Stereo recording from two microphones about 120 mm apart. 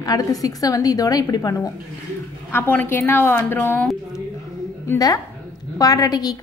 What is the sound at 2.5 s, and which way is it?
A woman's voice, 20° left (ahead or behind).